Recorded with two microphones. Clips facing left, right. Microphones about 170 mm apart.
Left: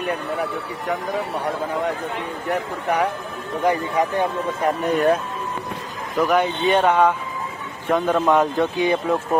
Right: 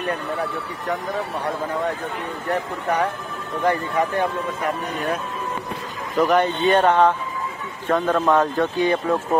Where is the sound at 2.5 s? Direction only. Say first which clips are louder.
Even; 10° left (ahead or behind).